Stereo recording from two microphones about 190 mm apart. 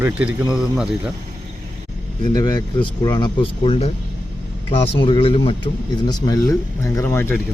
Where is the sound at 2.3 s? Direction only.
20° left (ahead or behind).